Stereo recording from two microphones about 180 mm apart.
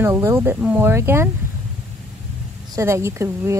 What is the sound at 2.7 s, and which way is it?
Speech, 15° right (ahead or behind).